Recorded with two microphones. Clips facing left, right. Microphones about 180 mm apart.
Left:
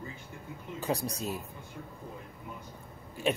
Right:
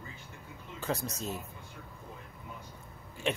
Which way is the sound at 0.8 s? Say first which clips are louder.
Left 2 dB; 15° left (ahead or behind).